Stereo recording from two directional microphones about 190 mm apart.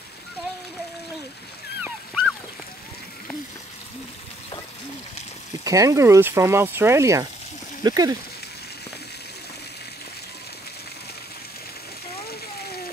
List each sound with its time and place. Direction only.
1.9 s dog: centre (ahead or behind)
5.6 s speech: 15° right (ahead or behind)